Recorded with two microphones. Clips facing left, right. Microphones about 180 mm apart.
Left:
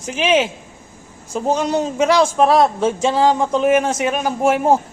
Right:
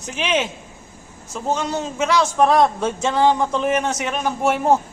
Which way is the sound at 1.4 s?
15° left (ahead or behind).